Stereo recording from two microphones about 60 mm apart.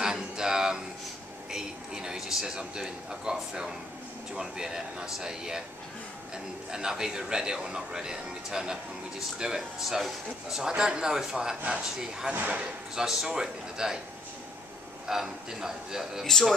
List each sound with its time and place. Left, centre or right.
0.0 s a sound: centre
1.5 s a man's voice: centre
12.4 s speech: right
12.9 s speech: centre
15.0 s speech: centre
16.3 s speech: centre